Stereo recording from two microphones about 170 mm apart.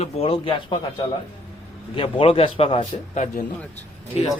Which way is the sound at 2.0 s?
30° left (ahead or behind).